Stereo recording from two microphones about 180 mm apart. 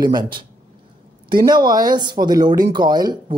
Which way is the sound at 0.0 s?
25° right (ahead or behind).